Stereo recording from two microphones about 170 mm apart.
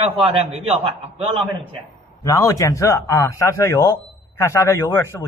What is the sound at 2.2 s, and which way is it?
Speech, 20° left (ahead or behind).